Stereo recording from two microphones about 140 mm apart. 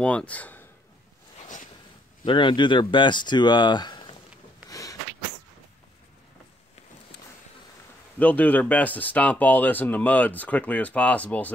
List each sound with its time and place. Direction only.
0.0 s speech: 10° left (ahead or behind)
2.2 s speech: 35° left (ahead or behind)
4.6 s a sound: 25° left (ahead or behind)
8.2 s speech: 10° left (ahead or behind)